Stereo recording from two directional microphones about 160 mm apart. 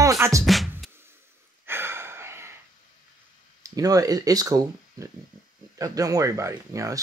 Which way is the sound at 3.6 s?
20° right (ahead or behind).